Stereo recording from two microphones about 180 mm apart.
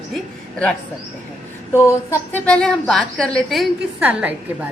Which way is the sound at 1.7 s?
15° left (ahead or behind).